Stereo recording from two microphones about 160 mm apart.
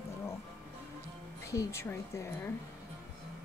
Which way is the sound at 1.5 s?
15° left (ahead or behind).